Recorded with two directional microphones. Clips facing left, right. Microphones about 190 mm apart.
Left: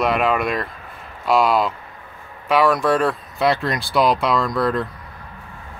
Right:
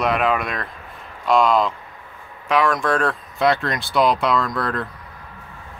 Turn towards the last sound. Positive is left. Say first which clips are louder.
# left 3 dB
turn(degrees=0)  # may be behind; listen again after turning